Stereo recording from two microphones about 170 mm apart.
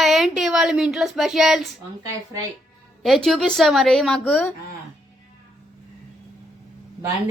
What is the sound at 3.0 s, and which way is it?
A woman's voice, centre (ahead or behind).